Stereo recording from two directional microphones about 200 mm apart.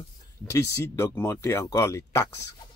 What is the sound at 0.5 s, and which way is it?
Speech, 15° left (ahead or behind).